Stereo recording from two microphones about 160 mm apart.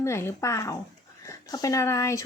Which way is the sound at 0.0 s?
15° left (ahead or behind).